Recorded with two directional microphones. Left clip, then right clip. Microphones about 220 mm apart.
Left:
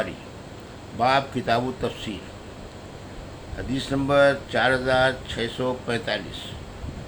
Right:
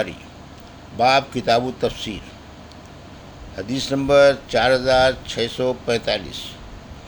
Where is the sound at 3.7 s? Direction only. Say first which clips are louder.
Right 5 dB; 30° right (ahead or behind).